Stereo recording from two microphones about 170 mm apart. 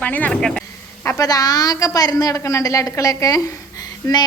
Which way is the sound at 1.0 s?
20° left (ahead or behind).